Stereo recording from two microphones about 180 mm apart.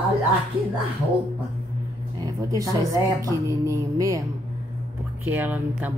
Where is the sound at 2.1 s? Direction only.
20° right (ahead or behind).